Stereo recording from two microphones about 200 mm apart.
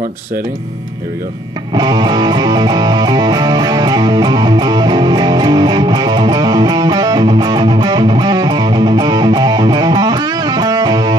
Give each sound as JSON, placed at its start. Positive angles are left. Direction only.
{"t": 1.8, "sound": "music", "side_deg": -20}